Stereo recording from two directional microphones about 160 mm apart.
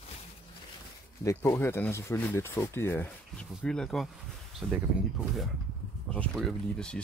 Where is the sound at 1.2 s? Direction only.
15° left (ahead or behind).